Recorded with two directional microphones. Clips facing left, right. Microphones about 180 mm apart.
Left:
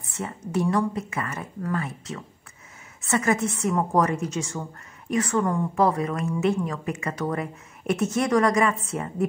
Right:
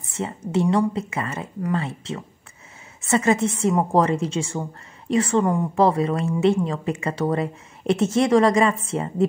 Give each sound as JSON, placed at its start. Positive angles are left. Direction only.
{"t": 0.2, "sound": "a woman's voice", "side_deg": -25}